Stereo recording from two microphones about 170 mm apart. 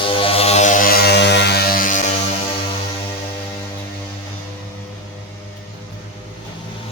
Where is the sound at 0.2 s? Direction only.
35° left (ahead or behind).